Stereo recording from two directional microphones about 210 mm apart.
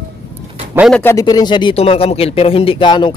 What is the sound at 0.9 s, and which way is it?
Speech, 15° left (ahead or behind).